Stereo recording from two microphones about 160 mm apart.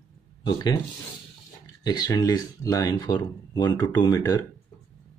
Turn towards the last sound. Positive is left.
turn(degrees=25)  # may be behind; listen again after turning